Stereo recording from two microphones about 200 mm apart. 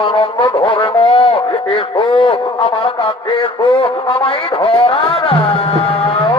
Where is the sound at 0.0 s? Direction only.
25° left (ahead or behind).